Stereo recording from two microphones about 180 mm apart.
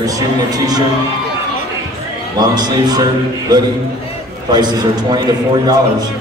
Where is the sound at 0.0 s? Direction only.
20° right (ahead or behind).